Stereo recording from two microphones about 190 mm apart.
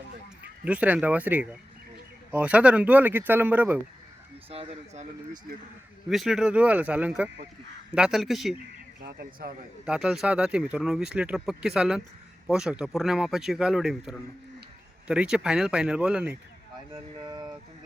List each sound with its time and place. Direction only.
0.6 s speech: 5° right (ahead or behind)
4.4 s speech: 30° right (ahead or behind)
6.1 s speech: centre (ahead or behind)
9.0 s speech: 55° right (ahead or behind)
9.8 s speech: 5° right (ahead or behind)
16.9 s a sound: 20° right (ahead or behind)